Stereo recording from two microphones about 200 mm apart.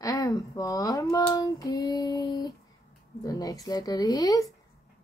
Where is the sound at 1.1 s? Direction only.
20° left (ahead or behind).